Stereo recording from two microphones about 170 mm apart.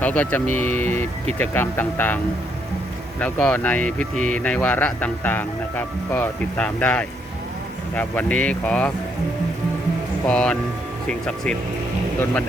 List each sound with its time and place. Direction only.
0.0 s speech: 10° left (ahead or behind)
3.2 s speech: 10° left (ahead or behind)
10.2 s speech: 5° left (ahead or behind)